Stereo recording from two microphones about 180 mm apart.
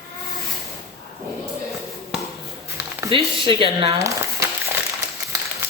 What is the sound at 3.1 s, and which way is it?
Speech, 30° right (ahead or behind).